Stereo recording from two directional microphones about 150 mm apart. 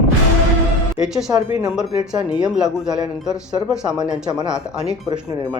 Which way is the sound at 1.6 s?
5° right (ahead or behind).